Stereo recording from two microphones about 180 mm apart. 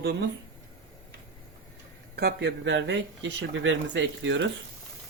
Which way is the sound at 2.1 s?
60° right (ahead or behind).